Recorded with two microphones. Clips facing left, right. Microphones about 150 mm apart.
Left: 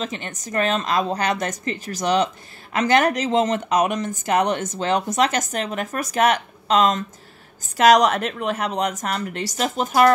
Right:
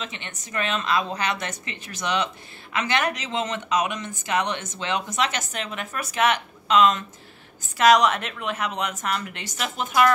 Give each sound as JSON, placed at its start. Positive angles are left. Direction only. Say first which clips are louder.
{"t": 0.0, "sound": "speech", "louder": "left 7 dB", "side_deg": 40}